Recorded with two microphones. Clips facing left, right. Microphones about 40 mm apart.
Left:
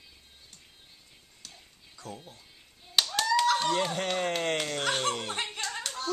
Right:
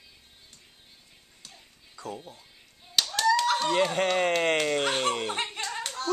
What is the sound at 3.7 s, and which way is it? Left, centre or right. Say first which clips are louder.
Speech: right 4 dB; right.